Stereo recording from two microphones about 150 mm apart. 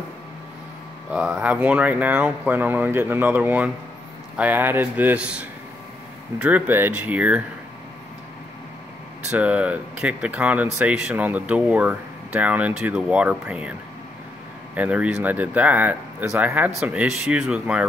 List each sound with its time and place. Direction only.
1.1 s speech: 5° right (ahead or behind)
9.3 s speech: 10° right (ahead or behind)
14.8 s speech: 10° right (ahead or behind)